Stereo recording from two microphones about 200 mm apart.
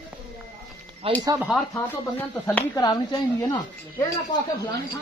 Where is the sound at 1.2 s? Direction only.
15° right (ahead or behind).